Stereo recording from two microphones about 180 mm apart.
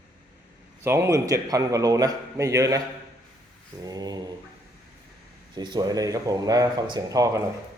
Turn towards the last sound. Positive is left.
turn(degrees=-20)  # may be behind; listen again after turning